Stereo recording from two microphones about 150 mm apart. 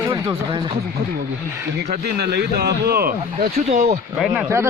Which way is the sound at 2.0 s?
90° right.